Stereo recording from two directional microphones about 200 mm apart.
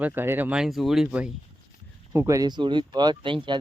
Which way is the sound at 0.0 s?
10° right (ahead or behind).